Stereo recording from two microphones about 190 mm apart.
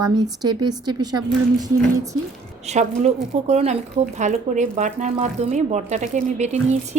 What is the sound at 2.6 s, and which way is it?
A woman's voice, 35° right (ahead or behind).